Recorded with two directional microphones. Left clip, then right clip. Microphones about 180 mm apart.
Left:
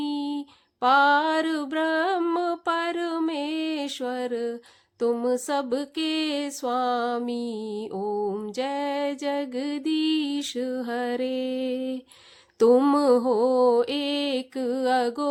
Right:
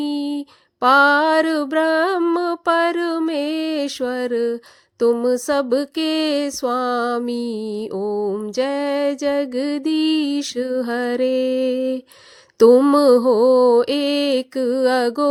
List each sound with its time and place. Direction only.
0.0 s female singing: 35° right (ahead or behind)
4.9 s mantra: 35° right (ahead or behind)